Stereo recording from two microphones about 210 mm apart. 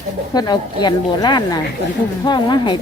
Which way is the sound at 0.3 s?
20° left (ahead or behind).